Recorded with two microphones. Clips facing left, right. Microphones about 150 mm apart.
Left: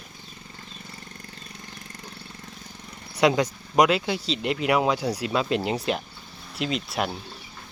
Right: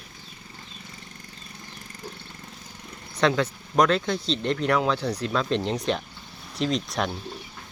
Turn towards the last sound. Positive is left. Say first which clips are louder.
# right 1 dB
turn(degrees=5)  # may be behind; listen again after turning